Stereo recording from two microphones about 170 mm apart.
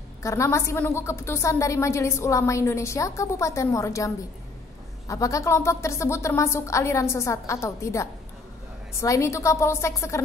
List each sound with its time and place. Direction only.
0.2 s a woman's voice: 15° left (ahead or behind)